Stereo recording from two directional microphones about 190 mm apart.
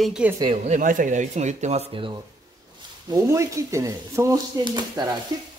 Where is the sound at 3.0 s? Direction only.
15° right (ahead or behind).